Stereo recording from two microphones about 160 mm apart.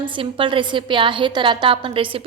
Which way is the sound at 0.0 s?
30° right (ahead or behind).